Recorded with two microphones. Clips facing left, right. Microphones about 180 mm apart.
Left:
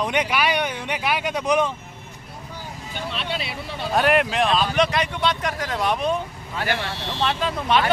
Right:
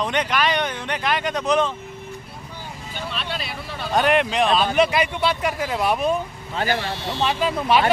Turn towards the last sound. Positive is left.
turn(degrees=-5)  # may be behind; listen again after turning